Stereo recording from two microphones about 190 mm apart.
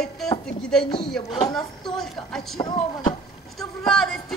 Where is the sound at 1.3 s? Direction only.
20° left (ahead or behind).